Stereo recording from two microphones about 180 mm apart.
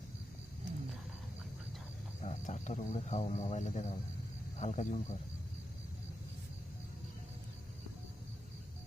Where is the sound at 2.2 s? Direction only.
40° left (ahead or behind).